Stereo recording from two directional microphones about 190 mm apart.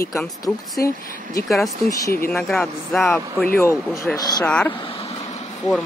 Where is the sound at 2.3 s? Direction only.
Centre (ahead or behind).